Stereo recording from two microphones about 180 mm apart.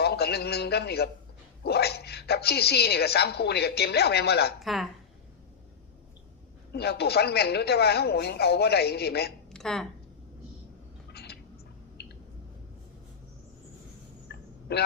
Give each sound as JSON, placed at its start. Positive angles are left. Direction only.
{"t": 0.0, "sound": "a man's voice", "side_deg": 65}
{"t": 4.6, "sound": "speech", "side_deg": 0}
{"t": 6.7, "sound": "a woman's voice", "side_deg": 65}
{"t": 9.5, "sound": "a woman's voice", "side_deg": 0}
{"t": 11.1, "sound": "a sound", "side_deg": 65}
{"t": 14.3, "sound": "a sound", "side_deg": 65}